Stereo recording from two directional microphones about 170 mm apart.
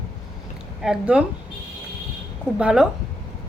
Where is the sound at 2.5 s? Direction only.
5° right (ahead or behind).